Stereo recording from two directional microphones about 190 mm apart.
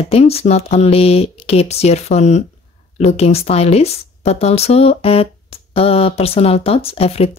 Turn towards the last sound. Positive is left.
turn(degrees=30)  # may be behind; listen again after turning